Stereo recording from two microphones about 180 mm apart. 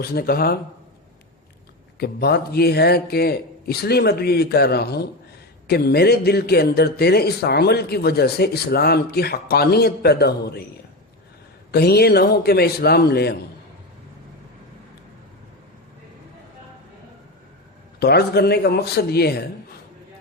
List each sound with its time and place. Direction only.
0.0 s a man's voice: 60° left (ahead or behind)
2.0 s a man's voice: 60° left (ahead or behind)
11.7 s a man's voice: 60° left (ahead or behind)
18.0 s a man's voice: 60° left (ahead or behind)